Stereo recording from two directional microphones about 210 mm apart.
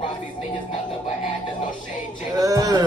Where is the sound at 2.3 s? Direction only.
15° right (ahead or behind).